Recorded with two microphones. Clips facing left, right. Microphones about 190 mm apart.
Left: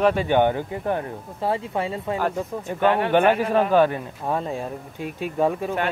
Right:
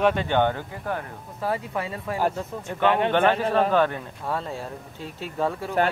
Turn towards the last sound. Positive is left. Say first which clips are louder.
# left 5 dB
turn(degrees=15)  # may be behind; listen again after turning